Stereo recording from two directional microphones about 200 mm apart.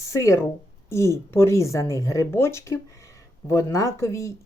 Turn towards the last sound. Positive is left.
turn(degrees=15)  # may be behind; listen again after turning